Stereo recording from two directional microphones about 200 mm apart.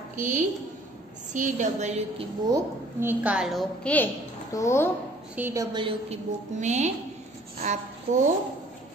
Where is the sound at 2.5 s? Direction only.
10° right (ahead or behind); by 4.8 s 15° left (ahead or behind).